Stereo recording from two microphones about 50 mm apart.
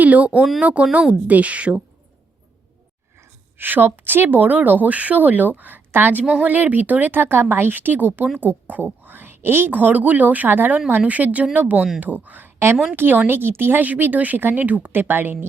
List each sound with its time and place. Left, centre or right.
0.0 s a woman's voice: right
3.6 s speech: right